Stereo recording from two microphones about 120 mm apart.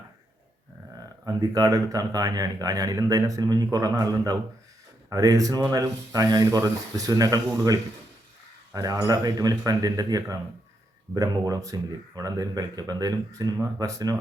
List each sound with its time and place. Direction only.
1.2 s speech: 30° right (ahead or behind)